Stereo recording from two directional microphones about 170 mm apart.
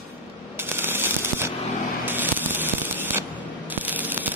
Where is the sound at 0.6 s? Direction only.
15° right (ahead or behind).